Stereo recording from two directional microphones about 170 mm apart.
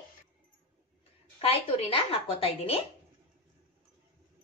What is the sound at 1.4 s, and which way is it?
Speech, 35° left (ahead or behind).